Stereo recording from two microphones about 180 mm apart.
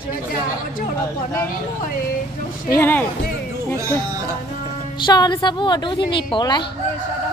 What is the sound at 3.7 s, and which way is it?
Speech, 15° right (ahead or behind).